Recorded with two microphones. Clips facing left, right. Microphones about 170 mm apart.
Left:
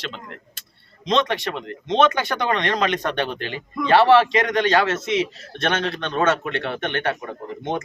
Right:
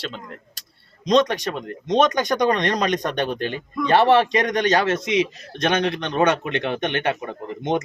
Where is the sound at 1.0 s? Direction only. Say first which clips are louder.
Right 3 dB; 40° right (ahead or behind).